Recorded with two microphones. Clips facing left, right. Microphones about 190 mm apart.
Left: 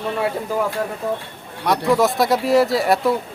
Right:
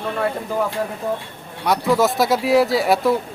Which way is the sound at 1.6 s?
Centre (ahead or behind).